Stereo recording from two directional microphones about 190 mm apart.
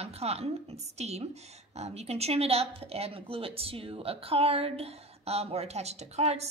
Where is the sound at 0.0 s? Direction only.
35° right (ahead or behind).